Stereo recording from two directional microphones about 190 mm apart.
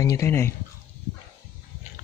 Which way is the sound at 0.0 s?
15° left (ahead or behind).